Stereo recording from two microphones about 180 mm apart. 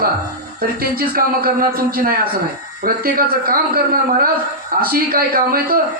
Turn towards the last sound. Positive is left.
turn(degrees=-55)  # may be behind; listen again after turning